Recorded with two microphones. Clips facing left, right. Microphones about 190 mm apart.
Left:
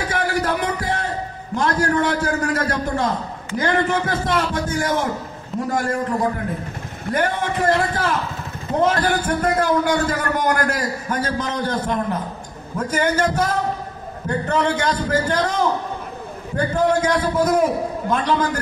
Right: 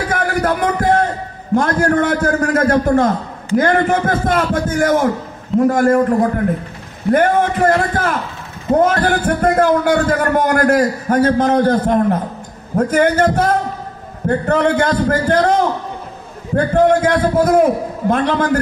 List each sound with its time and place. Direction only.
0.1 s music: 55° right (ahead or behind)
1.5 s a man's voice: 50° right (ahead or behind)